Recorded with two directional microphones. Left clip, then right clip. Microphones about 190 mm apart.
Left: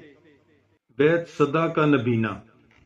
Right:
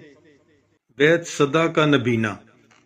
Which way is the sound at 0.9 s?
25° right (ahead or behind).